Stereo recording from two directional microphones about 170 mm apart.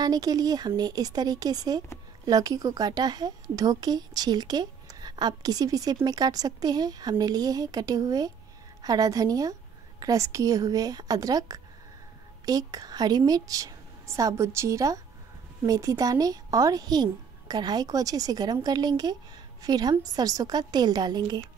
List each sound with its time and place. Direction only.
0.0 s a woman's voice: 25° right (ahead or behind)